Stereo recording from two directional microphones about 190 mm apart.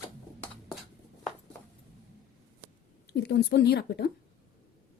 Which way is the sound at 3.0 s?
60° left (ahead or behind).